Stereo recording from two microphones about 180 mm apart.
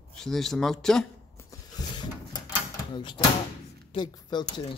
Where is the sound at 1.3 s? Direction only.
20° left (ahead or behind).